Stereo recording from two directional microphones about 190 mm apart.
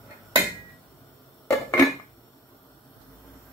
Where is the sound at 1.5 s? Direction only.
15° left (ahead or behind).